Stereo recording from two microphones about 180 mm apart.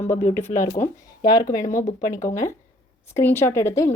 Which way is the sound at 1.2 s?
25° left (ahead or behind).